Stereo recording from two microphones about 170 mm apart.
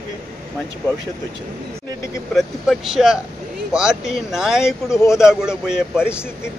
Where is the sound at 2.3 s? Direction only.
Centre (ahead or behind).